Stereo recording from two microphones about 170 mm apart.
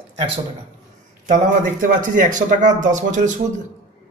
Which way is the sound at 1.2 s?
50° right (ahead or behind).